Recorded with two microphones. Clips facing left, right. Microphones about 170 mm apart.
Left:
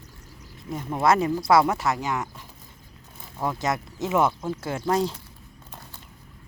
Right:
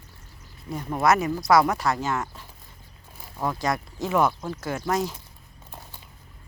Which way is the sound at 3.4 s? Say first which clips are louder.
Even; 20° left (ahead or behind).